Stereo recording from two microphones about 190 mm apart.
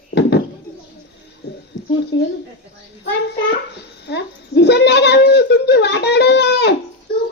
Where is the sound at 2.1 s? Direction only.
65° left (ahead or behind).